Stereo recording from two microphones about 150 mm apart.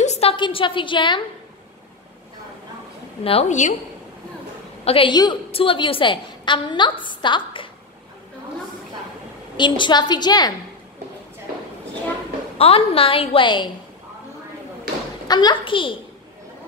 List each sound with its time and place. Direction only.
0.0 s a woman's voice: 45° left (ahead or behind)
3.3 s a woman's voice: 45° left (ahead or behind)
4.8 s a woman's voice: 35° left (ahead or behind)
9.6 s a woman's voice: 30° left (ahead or behind)
12.5 s a woman's voice: 40° left (ahead or behind)
15.2 s a woman's voice: 30° left (ahead or behind)